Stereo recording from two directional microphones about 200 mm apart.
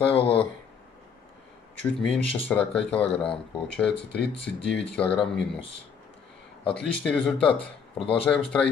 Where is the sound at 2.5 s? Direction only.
10° left (ahead or behind).